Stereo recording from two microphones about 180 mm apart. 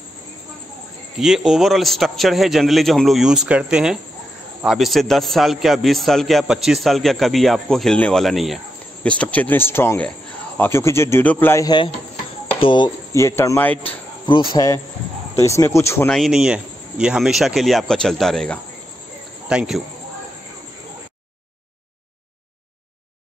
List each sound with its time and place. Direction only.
1.1 s a man's voice: centre (ahead or behind); by 16.1 s 15° left (ahead or behind)
16.1 s a man's voice: centre (ahead or behind)